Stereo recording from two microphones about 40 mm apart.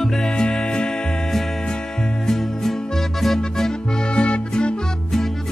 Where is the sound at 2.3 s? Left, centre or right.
Centre.